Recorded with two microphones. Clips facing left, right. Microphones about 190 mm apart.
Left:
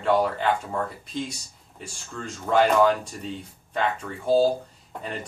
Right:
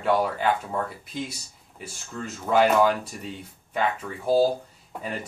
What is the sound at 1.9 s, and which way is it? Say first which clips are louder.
Speech: right 1 dB; 5° right (ahead or behind).